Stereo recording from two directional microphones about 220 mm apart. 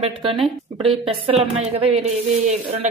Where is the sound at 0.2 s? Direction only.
25° right (ahead or behind).